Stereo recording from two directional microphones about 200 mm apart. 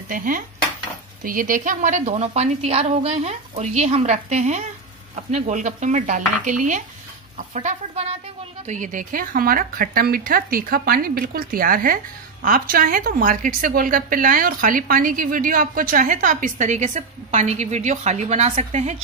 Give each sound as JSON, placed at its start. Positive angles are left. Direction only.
{"t": 0.1, "sound": "a woman's voice", "side_deg": -45}